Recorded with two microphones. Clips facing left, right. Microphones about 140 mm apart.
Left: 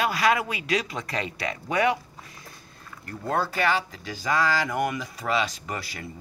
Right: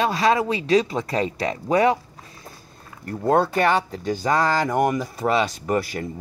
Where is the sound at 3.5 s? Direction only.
45° right (ahead or behind).